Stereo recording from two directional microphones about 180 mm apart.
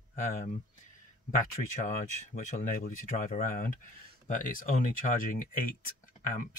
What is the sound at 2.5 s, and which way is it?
Speech, 45° left (ahead or behind).